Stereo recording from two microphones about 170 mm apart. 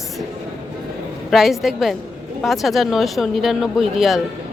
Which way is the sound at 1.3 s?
Centre (ahead or behind).